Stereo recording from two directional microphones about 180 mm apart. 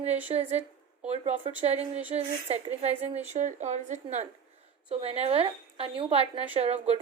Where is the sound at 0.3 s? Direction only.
35° right (ahead or behind).